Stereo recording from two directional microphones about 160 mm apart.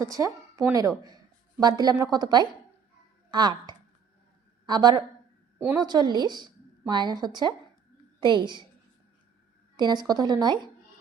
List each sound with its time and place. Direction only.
0.0 s a woman's voice: 20° right (ahead or behind)
9.7 s speech: 25° right (ahead or behind)